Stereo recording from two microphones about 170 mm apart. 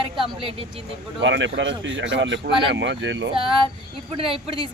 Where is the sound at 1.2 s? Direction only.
90° right.